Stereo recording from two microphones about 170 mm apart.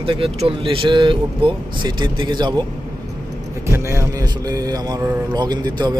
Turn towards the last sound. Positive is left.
turn(degrees=-25)  # may be behind; listen again after turning